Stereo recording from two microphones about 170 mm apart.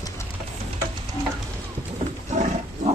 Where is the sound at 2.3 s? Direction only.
45° right (ahead or behind).